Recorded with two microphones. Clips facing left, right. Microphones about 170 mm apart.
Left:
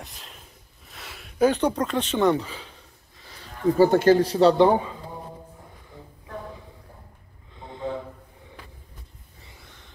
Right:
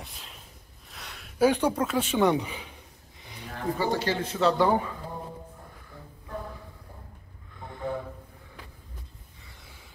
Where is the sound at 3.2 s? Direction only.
15° right (ahead or behind).